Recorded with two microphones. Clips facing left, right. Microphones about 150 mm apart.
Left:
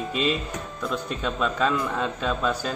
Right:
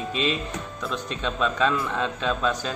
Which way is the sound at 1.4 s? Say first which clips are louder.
Right 1 dB; 5° left (ahead or behind).